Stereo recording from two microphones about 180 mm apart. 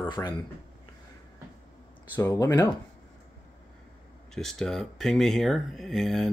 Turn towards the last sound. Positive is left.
turn(degrees=0)  # may be behind; listen again after turning